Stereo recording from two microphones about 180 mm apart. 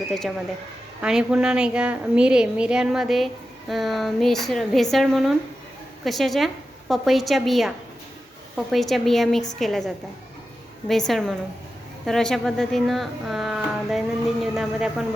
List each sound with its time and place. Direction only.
0.1 s a woman's voice: centre (ahead or behind)